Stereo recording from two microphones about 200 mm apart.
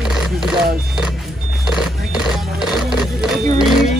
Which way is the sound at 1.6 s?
5° right (ahead or behind).